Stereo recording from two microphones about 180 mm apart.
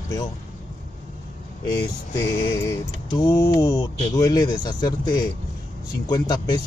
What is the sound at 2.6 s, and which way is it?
Speech, 20° left (ahead or behind).